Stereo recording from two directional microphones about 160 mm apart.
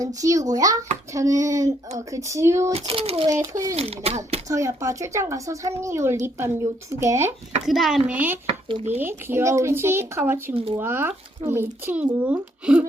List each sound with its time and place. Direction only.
0.0 s speech: 20° right (ahead or behind)
2.7 s speech: 35° right (ahead or behind)
3.2 s speech: 20° right (ahead or behind)
3.8 s speech: 40° right (ahead or behind)
4.4 s speech: 20° right (ahead or behind)
7.6 s speech: centre (ahead or behind)
8.7 s speech: 45° right (ahead or behind)
9.0 s speech: 15° right (ahead or behind)